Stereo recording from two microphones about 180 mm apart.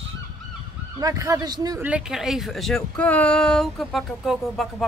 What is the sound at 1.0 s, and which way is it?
Speech, 20° right (ahead or behind).